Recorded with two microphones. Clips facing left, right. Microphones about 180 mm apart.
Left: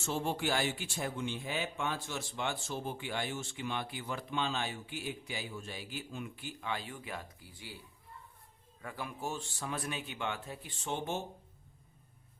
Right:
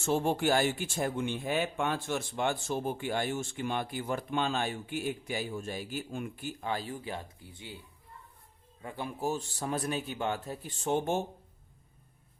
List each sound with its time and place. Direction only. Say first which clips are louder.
0.0 s speech: right 6 dB; 50° right (ahead or behind); by 7.8 s 25° right (ahead or behind)
8.8 s a man's voice: right 5 dB; 25° right (ahead or behind); by 11.2 s 50° right (ahead or behind)